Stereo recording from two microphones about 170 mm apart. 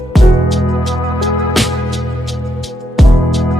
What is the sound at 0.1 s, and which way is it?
Music, centre (ahead or behind).